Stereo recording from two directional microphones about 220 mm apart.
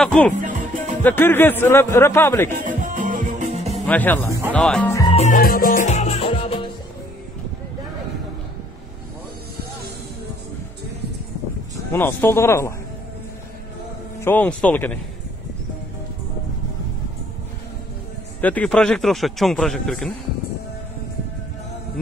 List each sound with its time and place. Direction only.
0.0 s speech: 5° left (ahead or behind)
0.3 s music: 35° right (ahead or behind)
1.0 s speech: 10° left (ahead or behind)
2.6 s music: 35° right (ahead or behind)
3.8 s speech: 5° left (ahead or behind)
5.1 s music: 35° left (ahead or behind)
11.7 s speech: 10° left (ahead or behind)
14.2 s speech: 5° left (ahead or behind)
18.4 s speech: 5° left (ahead or behind)